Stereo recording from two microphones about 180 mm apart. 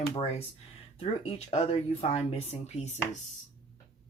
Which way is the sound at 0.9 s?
30° left (ahead or behind).